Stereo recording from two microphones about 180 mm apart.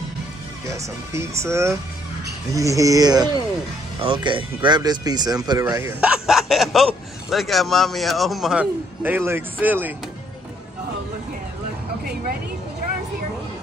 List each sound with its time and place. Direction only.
0.7 s speech: 15° right (ahead or behind)
5.8 s a man's voice: 10° right (ahead or behind)